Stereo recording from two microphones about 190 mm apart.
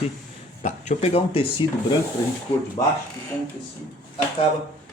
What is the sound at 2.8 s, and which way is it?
Speech, 30° left (ahead or behind).